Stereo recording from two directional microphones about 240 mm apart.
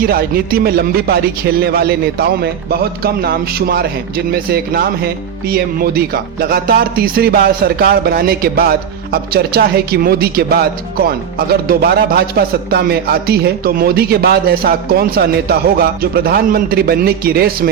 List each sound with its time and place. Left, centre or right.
0.0 s a woman's voice: right